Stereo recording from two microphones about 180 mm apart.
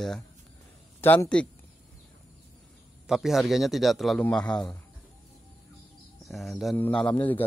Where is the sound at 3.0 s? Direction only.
Centre (ahead or behind).